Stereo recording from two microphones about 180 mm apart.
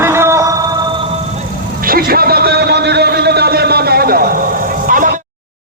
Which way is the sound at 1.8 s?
55° right (ahead or behind).